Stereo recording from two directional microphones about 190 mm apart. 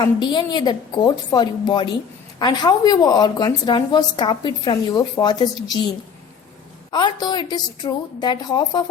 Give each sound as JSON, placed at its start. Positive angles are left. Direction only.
{"t": 0.0, "sound": "a woman's voice", "side_deg": 20}
{"t": 6.9, "sound": "a woman's voice", "side_deg": 20}